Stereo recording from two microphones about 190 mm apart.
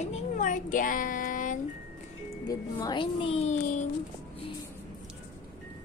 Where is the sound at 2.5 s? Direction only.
20° left (ahead or behind); by 3.9 s 40° left (ahead or behind).